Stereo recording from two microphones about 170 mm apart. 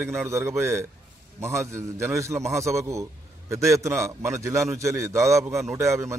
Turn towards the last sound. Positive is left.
turn(degrees=-15)  # may be behind; listen again after turning